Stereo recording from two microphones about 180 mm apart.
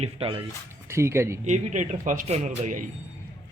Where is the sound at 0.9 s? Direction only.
15° right (ahead or behind).